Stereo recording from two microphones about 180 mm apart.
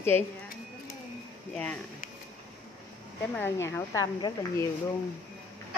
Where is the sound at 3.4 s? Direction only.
15° left (ahead or behind).